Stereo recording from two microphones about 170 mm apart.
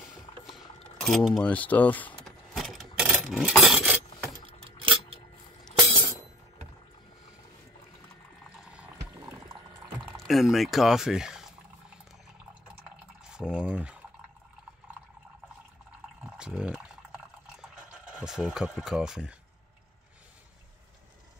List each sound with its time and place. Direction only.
0.5 s keys jangling: centre (ahead or behind)
2.6 s coin: 5° right (ahead or behind)
4.5 s a sound: 35° right (ahead or behind)
5.8 s chink: 30° right (ahead or behind)
8.5 s music: 5° right (ahead or behind)
10.1 s speech: centre (ahead or behind)
13.3 s boiling: 5° right (ahead or behind)
16.3 s a sound: 5° right (ahead or behind)
18.1 s speech: 5° right (ahead or behind)